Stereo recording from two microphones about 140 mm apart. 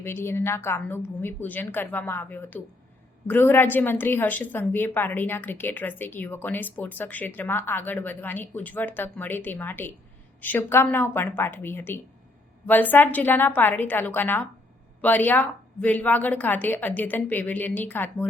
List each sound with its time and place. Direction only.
0.0 s a woman's voice: 15° left (ahead or behind)